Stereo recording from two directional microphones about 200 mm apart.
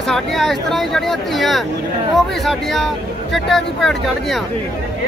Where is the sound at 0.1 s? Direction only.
Centre (ahead or behind).